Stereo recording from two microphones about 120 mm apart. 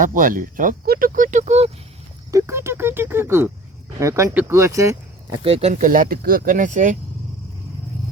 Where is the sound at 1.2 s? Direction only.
90° right; by 1.7 s 65° right (ahead or behind).